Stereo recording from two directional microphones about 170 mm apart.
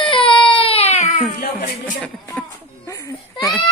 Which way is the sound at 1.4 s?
55° left (ahead or behind).